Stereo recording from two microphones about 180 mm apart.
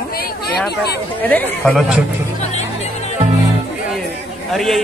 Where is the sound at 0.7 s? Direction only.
65° left (ahead or behind).